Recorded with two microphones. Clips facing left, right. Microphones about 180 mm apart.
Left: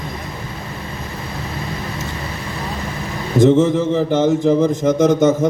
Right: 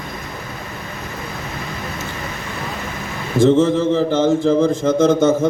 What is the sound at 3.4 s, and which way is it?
A man's voice, 20° left (ahead or behind).